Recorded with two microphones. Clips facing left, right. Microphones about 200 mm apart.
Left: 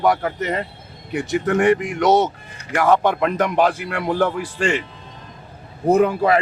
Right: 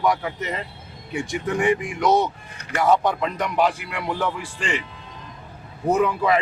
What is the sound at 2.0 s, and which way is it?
Speech, 85° left.